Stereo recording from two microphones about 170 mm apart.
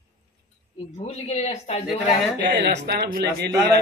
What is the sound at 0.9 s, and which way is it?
Speech, 40° left (ahead or behind).